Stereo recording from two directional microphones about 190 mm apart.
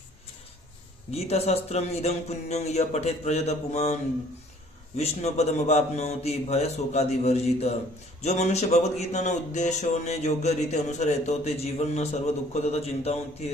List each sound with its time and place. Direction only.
1.1 s speech: 35° left (ahead or behind)
4.9 s speech: 35° left (ahead or behind)